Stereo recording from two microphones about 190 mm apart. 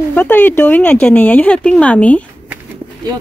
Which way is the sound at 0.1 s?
10° left (ahead or behind).